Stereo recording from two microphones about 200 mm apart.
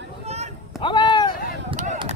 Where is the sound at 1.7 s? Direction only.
35° right (ahead or behind).